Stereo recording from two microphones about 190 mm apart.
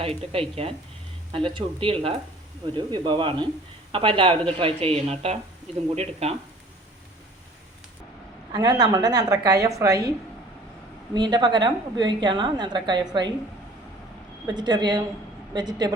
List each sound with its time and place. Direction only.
0.0 s a woman's voice: 30° right (ahead or behind)
8.5 s a woman's voice: 20° right (ahead or behind)
11.1 s a woman's voice: 25° right (ahead or behind)
14.4 s a woman's voice: 25° right (ahead or behind)